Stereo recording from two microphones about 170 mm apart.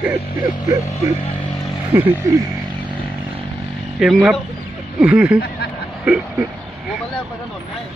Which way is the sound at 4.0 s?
Centre (ahead or behind).